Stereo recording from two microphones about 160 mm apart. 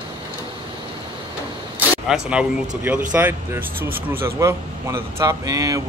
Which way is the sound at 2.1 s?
5° right (ahead or behind).